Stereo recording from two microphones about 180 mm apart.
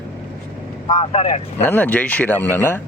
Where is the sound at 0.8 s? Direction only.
30° left (ahead or behind).